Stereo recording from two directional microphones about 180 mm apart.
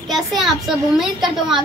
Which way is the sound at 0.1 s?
Centre (ahead or behind).